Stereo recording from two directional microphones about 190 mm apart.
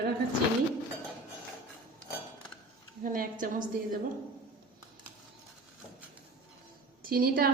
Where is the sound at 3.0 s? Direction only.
45° right (ahead or behind).